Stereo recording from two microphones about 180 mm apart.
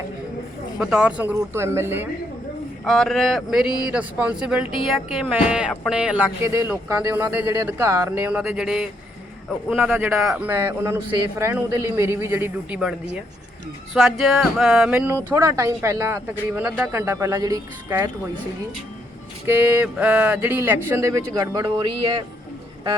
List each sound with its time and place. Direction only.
0.8 s speech: 5° right (ahead or behind)
2.8 s a man's voice: centre (ahead or behind)
6.4 s speech: 15° right (ahead or behind)
19.5 s speech: 10° right (ahead or behind)